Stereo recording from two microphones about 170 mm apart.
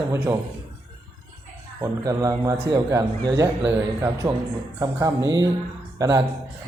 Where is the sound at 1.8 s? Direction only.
20° right (ahead or behind).